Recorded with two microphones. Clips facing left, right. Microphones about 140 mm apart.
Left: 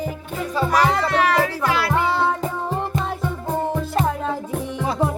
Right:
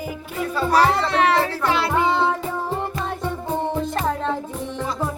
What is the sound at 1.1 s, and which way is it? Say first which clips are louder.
Music: even; 25° right (ahead or behind).